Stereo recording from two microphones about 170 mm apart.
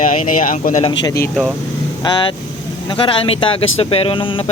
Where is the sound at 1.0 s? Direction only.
20° left (ahead or behind).